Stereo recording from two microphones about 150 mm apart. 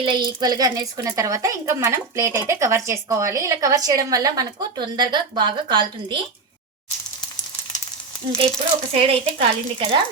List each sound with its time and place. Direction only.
0.0 s a woman's voice: 30° right (ahead or behind)
9.0 s a woman's voice: 40° right (ahead or behind)